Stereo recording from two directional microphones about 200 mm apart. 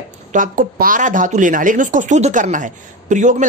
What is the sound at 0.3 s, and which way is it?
A woman's voice, 40° right (ahead or behind).